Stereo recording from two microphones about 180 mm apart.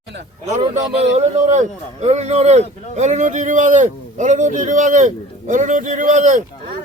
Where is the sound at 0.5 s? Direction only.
40° right (ahead or behind).